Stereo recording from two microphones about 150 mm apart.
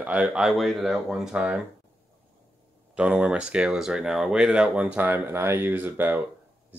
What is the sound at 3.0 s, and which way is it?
Speech, 10° right (ahead or behind).